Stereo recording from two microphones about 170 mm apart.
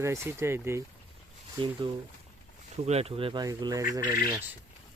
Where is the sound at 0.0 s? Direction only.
15° right (ahead or behind).